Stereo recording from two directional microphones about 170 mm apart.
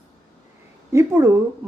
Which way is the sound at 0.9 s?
15° right (ahead or behind).